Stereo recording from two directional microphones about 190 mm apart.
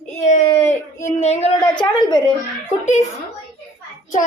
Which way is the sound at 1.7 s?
20° left (ahead or behind).